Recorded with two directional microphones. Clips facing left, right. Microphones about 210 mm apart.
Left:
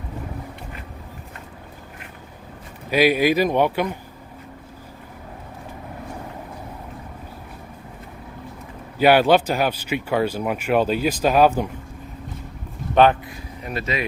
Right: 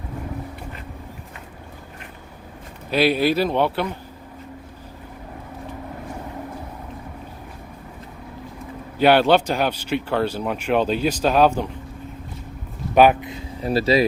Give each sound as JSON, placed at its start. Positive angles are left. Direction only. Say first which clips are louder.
{"t": 2.9, "sound": "speech", "louder": "left 1 dB", "side_deg": 10}
{"t": 9.0, "sound": "speech", "louder": "even", "side_deg": 10}
{"t": 12.9, "sound": "speech", "louder": "right 1 dB", "side_deg": -10}
{"t": 13.2, "sound": "speech", "louder": "right 7 dB", "side_deg": -25}